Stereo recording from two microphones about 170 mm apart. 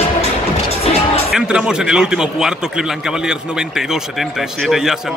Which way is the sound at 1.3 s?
5° right (ahead or behind).